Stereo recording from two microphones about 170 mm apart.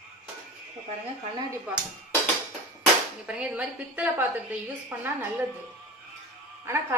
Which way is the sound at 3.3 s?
5° right (ahead or behind).